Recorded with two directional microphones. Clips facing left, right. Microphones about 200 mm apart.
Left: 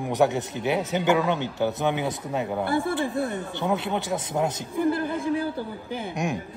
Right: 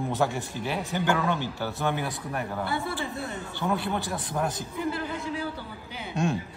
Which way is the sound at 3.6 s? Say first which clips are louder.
Left 2 dB; 20° left (ahead or behind).